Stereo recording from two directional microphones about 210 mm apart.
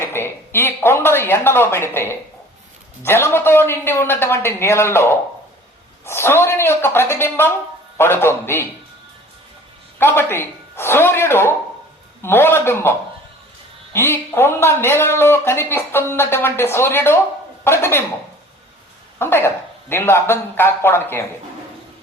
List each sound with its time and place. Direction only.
0.0 s speech: 10° left (ahead or behind)
10.0 s speech: 10° left (ahead or behind)
19.2 s speech: 10° left (ahead or behind)